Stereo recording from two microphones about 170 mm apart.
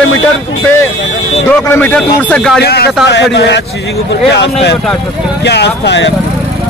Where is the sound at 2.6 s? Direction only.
70° left (ahead or behind).